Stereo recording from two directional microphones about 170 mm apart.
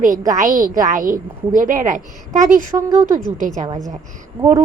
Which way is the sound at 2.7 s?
25° right (ahead or behind).